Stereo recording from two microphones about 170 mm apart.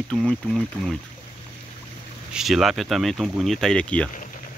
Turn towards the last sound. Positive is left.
turn(degrees=5)  # may be behind; listen again after turning